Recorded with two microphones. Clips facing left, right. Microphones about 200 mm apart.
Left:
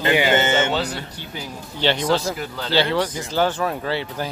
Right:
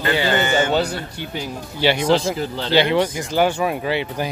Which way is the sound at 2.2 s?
30° right (ahead or behind).